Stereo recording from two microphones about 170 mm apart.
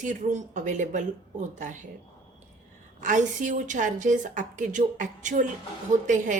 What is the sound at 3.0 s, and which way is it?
A woman's voice, 50° right (ahead or behind).